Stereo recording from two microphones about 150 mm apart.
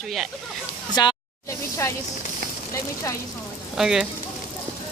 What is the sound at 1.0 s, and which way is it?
Speech, 25° left (ahead or behind).